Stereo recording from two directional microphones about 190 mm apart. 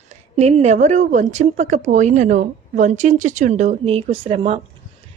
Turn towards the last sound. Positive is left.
turn(degrees=-30)  # may be behind; listen again after turning